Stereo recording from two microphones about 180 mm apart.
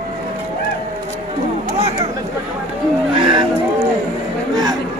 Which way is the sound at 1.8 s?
35° right (ahead or behind).